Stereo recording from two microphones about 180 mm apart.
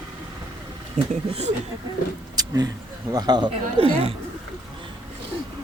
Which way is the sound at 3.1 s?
20° right (ahead or behind).